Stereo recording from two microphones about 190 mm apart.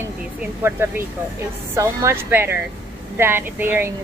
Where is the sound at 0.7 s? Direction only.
10° right (ahead or behind).